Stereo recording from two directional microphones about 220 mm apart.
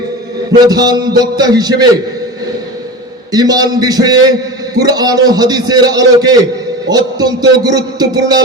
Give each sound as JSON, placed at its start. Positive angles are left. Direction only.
{"t": 0.5, "sound": "a man's voice", "side_deg": -20}
{"t": 3.3, "sound": "a man's voice", "side_deg": -15}